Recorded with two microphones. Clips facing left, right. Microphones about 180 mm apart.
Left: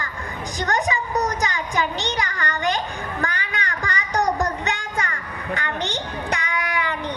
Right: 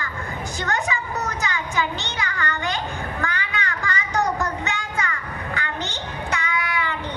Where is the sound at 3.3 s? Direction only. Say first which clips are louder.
Right 1 dB; 15° left (ahead or behind).